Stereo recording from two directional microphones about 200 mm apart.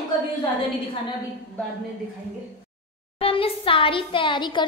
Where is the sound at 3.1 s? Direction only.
30° left (ahead or behind).